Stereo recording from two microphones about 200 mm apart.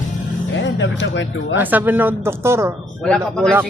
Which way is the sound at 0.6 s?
70° left (ahead or behind).